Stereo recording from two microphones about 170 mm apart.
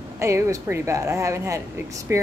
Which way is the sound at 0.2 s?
15° right (ahead or behind).